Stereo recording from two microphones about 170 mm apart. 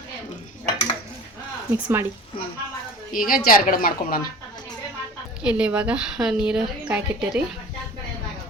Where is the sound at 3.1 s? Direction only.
55° left (ahead or behind).